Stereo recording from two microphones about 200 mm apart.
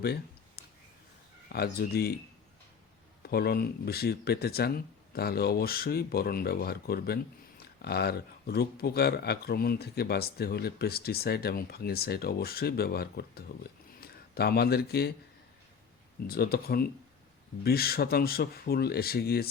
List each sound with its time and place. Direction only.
0.0 s a sound: 55° left (ahead or behind)
1.5 s speech: 50° left (ahead or behind)
3.2 s a man's voice: 50° left (ahead or behind)
16.2 s speech: 50° left (ahead or behind)